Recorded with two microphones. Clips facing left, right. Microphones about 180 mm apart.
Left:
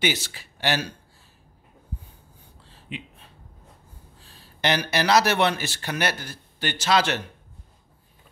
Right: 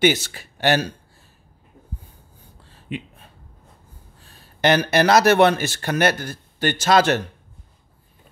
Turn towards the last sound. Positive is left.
turn(degrees=-45)  # may be behind; listen again after turning